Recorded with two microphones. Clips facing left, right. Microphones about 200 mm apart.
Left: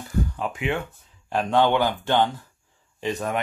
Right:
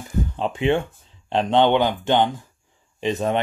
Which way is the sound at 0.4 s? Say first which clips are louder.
Right 6 dB; 30° right (ahead or behind).